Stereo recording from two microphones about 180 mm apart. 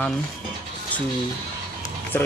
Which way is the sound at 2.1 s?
10° left (ahead or behind).